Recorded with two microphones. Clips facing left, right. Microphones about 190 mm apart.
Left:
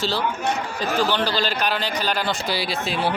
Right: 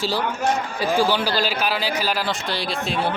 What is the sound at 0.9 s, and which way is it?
A man's voice, 10° right (ahead or behind).